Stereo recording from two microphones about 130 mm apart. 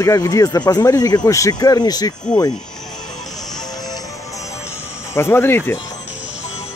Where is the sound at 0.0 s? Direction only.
25° left (ahead or behind).